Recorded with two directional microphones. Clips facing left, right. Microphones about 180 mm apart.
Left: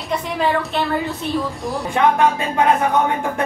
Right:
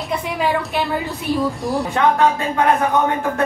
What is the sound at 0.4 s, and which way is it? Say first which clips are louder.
A woman's voice: left 1 dB; centre (ahead or behind).